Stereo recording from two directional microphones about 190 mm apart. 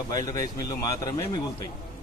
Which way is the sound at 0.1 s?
20° left (ahead or behind).